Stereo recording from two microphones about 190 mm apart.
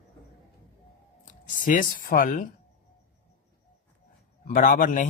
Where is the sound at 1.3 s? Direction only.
45° left (ahead or behind).